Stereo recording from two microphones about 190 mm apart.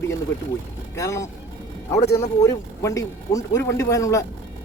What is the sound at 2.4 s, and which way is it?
A man's voice, 15° left (ahead or behind).